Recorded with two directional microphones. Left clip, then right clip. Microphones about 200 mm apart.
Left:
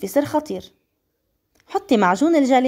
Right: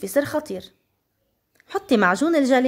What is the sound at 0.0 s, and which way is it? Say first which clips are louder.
Speech: left 2 dB; 5° left (ahead or behind).